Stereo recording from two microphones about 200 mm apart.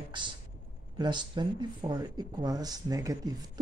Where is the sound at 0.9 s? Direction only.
20° right (ahead or behind).